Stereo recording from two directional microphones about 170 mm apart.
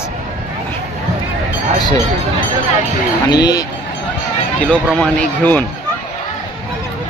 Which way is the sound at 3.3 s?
25° left (ahead or behind).